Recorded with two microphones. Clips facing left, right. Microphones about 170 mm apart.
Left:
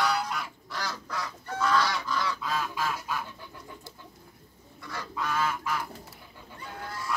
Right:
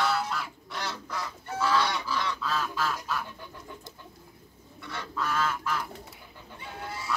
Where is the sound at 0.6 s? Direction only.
25° right (ahead or behind).